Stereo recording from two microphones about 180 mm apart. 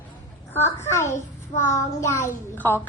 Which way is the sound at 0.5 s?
15° left (ahead or behind).